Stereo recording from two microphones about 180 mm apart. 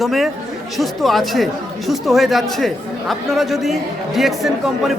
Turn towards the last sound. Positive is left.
turn(degrees=0)  # may be behind; listen again after turning